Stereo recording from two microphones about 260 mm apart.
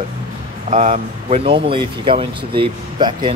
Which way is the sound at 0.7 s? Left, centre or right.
Right.